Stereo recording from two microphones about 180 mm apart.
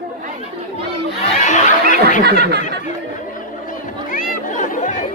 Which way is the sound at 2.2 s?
65° right (ahead or behind).